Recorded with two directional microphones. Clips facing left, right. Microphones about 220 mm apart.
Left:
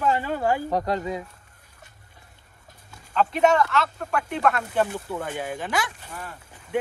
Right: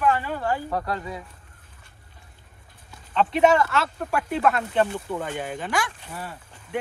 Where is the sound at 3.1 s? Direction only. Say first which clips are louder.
Right 1 dB; centre (ahead or behind).